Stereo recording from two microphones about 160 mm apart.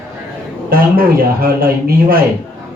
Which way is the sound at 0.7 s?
65° right (ahead or behind).